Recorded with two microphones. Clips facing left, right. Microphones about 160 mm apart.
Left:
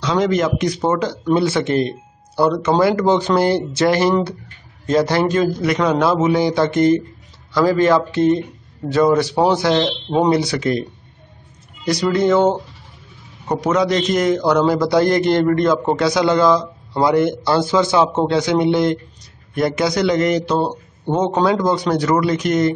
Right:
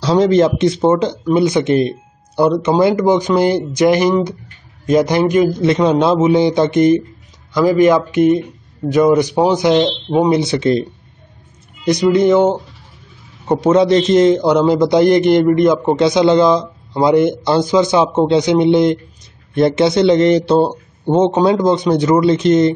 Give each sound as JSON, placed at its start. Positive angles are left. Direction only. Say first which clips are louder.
{"t": 0.0, "sound": "a man's voice", "louder": "right 6 dB", "side_deg": -30}